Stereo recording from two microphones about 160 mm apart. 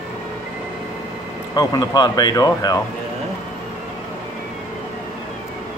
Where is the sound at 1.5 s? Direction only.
25° left (ahead or behind).